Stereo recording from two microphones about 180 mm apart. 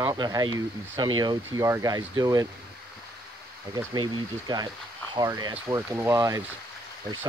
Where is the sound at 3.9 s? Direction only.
25° right (ahead or behind).